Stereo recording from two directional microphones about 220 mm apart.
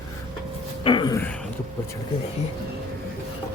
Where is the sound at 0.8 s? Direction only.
20° left (ahead or behind).